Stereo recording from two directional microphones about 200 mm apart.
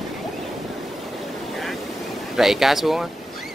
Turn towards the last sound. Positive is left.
turn(degrees=0)  # may be behind; listen again after turning